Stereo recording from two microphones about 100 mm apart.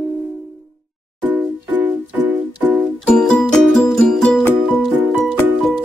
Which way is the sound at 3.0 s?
5° left (ahead or behind).